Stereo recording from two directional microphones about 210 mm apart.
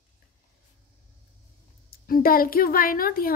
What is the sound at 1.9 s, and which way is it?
Speech, 45° left (ahead or behind).